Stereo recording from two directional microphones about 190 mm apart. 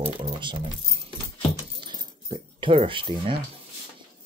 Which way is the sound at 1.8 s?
25° right (ahead or behind).